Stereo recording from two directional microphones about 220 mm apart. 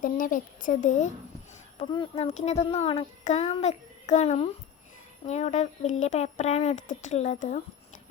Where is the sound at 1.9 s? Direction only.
20° left (ahead or behind).